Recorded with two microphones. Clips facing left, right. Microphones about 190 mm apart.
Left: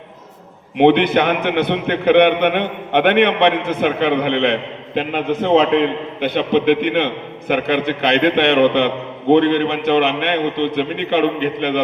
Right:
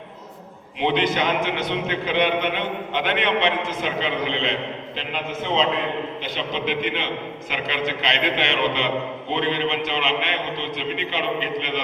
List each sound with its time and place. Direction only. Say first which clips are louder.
0.8 s a man's voice: left 9 dB; 60° left (ahead or behind)